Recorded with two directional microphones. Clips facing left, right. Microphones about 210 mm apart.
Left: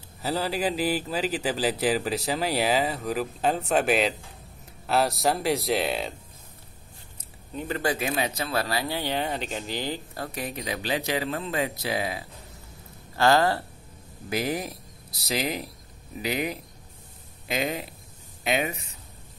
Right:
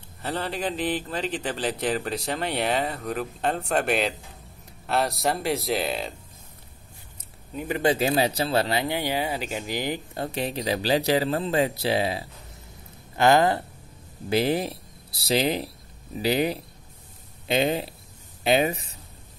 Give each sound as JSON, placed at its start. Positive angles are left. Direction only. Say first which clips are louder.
{"t": 0.2, "sound": "a man's voice", "louder": "left 2 dB", "side_deg": 5}
{"t": 7.5, "sound": "speech", "louder": "right 4 dB", "side_deg": -15}
{"t": 7.9, "sound": "speech", "louder": "right 5 dB", "side_deg": -30}
{"t": 14.3, "sound": "speech", "louder": "right 5 dB", "side_deg": -30}